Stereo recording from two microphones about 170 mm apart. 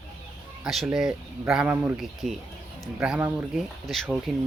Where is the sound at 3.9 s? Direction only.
Centre (ahead or behind).